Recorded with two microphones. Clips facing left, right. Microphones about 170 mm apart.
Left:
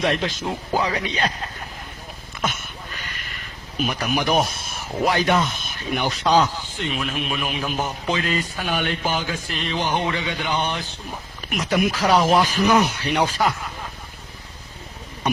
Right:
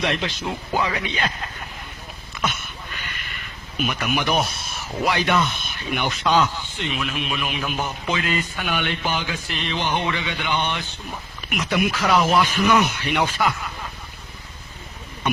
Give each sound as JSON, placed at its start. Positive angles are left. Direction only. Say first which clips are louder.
{"t": 0.0, "sound": "a man's voice", "louder": "left 2 dB", "side_deg": 45}
{"t": 2.4, "sound": "a sound", "louder": "even", "side_deg": 45}
{"t": 3.8, "sound": "a man's voice", "louder": "left 1 dB", "side_deg": 35}